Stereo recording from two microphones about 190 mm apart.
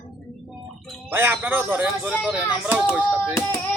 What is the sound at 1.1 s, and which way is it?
Speech, 10° right (ahead or behind).